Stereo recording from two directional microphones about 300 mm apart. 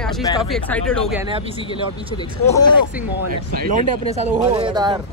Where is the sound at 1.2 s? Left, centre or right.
Centre.